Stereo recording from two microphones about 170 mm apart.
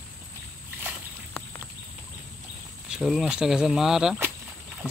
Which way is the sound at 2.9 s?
Centre (ahead or behind).